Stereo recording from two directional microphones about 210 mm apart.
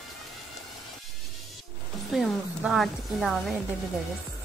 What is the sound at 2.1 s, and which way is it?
A woman's voice, centre (ahead or behind).